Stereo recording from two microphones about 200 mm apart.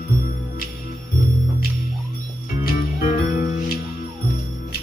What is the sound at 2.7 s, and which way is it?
Music, 45° left (ahead or behind).